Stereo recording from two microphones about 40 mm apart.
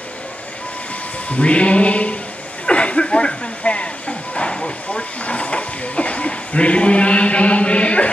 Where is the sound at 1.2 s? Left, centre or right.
Left.